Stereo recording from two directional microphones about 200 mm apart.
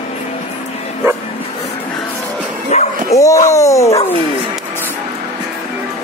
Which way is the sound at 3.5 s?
15° left (ahead or behind).